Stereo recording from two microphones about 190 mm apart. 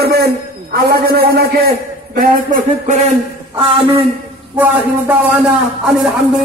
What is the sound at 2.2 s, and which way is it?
Speech, 40° right (ahead or behind).